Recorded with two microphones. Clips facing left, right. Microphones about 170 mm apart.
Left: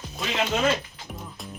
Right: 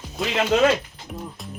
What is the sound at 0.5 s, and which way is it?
Speech, 90° right.